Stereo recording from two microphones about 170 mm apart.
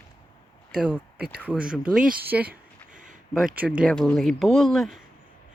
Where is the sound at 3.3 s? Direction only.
Centre (ahead or behind).